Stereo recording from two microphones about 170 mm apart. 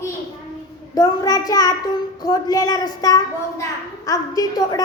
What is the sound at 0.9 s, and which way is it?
A child's voice, 20° left (ahead or behind).